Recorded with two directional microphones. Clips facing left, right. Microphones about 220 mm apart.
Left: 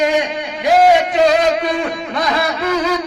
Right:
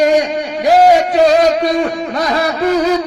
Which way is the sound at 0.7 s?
40° right (ahead or behind).